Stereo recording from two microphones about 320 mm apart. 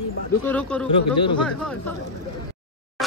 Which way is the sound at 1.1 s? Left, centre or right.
Centre.